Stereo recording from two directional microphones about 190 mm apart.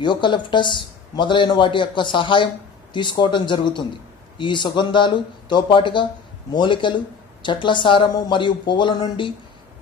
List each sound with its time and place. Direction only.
0.0 s speech: 25° left (ahead or behind)